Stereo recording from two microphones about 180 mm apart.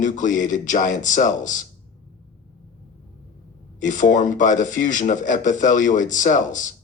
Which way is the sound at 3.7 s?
45° left (ahead or behind).